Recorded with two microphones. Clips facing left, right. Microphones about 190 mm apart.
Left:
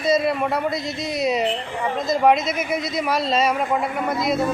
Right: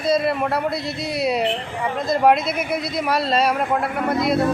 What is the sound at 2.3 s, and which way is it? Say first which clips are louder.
Speech: even; 60° right (ahead or behind).